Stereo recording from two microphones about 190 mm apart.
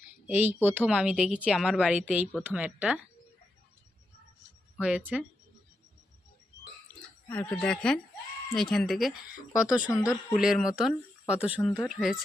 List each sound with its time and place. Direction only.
0.3 s speech: 10° right (ahead or behind)
4.8 s speech: 5° right (ahead or behind)
7.3 s speech: 5° left (ahead or behind)
9.9 s speech: 20° left (ahead or behind)
10.3 s speech: centre (ahead or behind)